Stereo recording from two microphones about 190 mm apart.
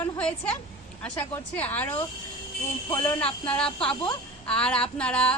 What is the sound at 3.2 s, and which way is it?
A woman's voice, 5° left (ahead or behind).